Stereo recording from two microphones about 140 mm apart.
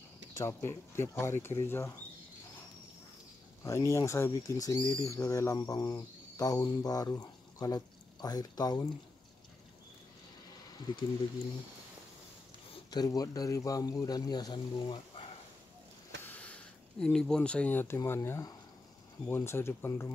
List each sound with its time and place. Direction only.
0.4 s speech: 15° left (ahead or behind)
3.6 s speech: 20° left (ahead or behind)
10.9 s speech: 35° left (ahead or behind)
12.7 s speech: 30° left (ahead or behind)
16.2 s speech: 10° left (ahead or behind)